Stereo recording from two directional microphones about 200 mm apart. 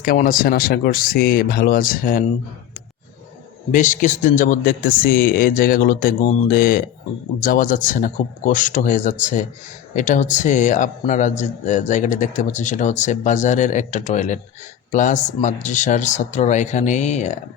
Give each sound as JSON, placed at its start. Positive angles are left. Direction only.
{"t": 0.0, "sound": "speech", "side_deg": 45}
{"t": 3.7, "sound": "a man's voice", "side_deg": 40}